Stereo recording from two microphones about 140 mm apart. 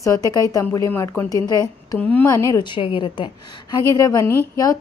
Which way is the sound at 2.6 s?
35° left (ahead or behind).